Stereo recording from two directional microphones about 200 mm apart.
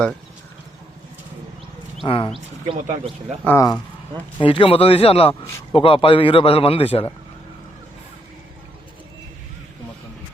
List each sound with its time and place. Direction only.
2.0 s a man's voice: 25° left (ahead or behind)
2.7 s speech: 35° right (ahead or behind)
3.4 s speech: 15° left (ahead or behind)
4.4 s a man's voice: 25° left (ahead or behind)